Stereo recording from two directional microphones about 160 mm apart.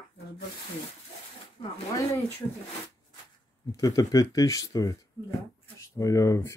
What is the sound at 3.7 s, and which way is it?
Speech, 20° left (ahead or behind).